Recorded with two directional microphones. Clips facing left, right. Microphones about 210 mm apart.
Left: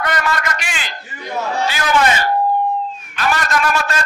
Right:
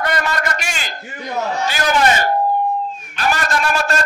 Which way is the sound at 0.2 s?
40° right (ahead or behind).